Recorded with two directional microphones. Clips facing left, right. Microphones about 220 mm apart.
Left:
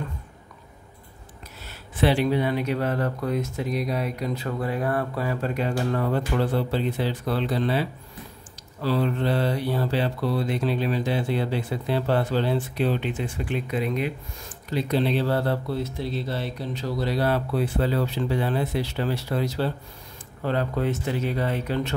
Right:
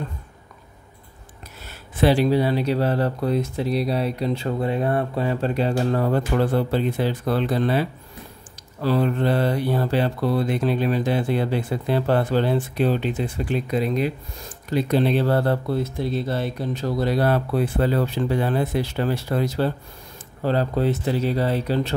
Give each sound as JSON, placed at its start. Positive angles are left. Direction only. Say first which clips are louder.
{"t": 2.0, "sound": "speech", "louder": "right 4 dB", "side_deg": -40}
{"t": 8.8, "sound": "mantra", "louder": "right 3 dB", "side_deg": -50}
{"t": 14.7, "sound": "mantra", "louder": "right 4 dB", "side_deg": -50}
{"t": 20.4, "sound": "speech", "louder": "right 4 dB", "side_deg": -35}